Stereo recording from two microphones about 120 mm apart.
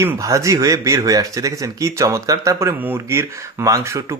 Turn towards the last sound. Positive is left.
turn(degrees=-25)  # may be behind; listen again after turning